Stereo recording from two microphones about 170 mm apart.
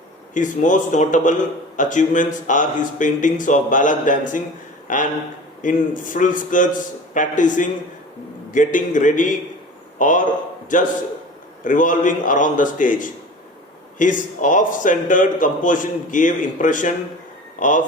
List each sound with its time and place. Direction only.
0.3 s speech: 50° left (ahead or behind)